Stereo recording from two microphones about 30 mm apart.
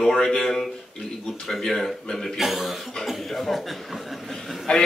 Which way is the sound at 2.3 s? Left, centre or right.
Centre.